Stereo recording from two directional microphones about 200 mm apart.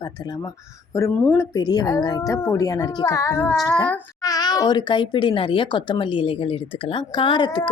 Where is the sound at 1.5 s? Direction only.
20° left (ahead or behind).